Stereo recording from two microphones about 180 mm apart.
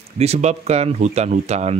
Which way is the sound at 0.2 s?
35° right (ahead or behind).